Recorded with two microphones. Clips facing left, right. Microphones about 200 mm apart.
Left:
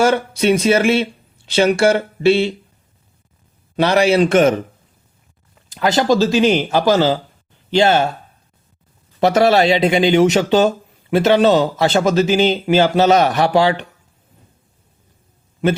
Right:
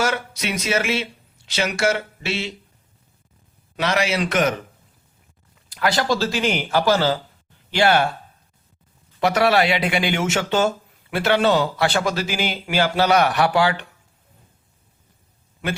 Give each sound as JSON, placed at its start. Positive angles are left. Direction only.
{"t": 0.0, "sound": "speech", "side_deg": 30}
{"t": 3.8, "sound": "speech", "side_deg": 35}
{"t": 5.7, "sound": "speech", "side_deg": 20}
{"t": 9.2, "sound": "speech", "side_deg": 25}